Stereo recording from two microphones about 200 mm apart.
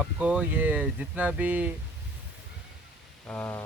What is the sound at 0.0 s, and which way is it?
Speech, 5° right (ahead or behind).